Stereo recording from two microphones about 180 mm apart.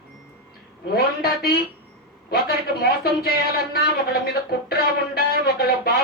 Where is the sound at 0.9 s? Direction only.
60° left (ahead or behind).